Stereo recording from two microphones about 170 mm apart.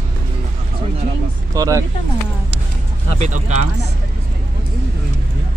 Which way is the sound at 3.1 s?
45° right (ahead or behind).